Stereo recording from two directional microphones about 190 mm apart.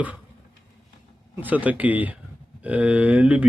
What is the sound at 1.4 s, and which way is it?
Speech, 10° right (ahead or behind).